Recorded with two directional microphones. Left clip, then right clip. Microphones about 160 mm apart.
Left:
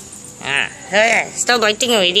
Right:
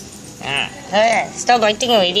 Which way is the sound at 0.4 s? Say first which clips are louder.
Left 2 dB; 35° left (ahead or behind).